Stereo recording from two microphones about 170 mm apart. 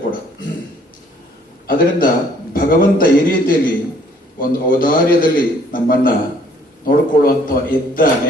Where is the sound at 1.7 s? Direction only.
55° left (ahead or behind).